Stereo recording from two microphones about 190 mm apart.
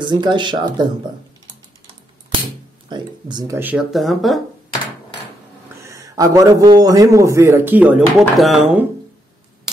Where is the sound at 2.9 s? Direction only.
25° right (ahead or behind).